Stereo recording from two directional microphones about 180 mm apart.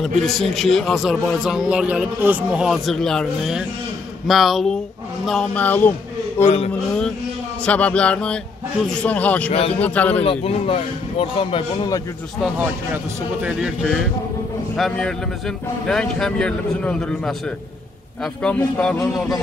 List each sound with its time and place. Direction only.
0.2 s speech: centre (ahead or behind)
6.4 s speech: 35° left (ahead or behind)
7.6 s a man's voice: 5° left (ahead or behind)
9.5 s speech: 35° left (ahead or behind)
9.8 s a man's voice: 10° left (ahead or behind)
10.2 s speech: 30° left (ahead or behind)
12.9 s speech: 10° right (ahead or behind)